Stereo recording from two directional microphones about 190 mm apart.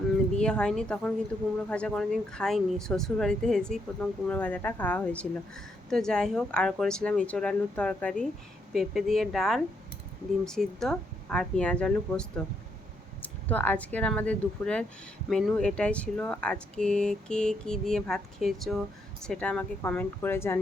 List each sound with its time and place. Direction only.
0.3 s speech: 5° left (ahead or behind)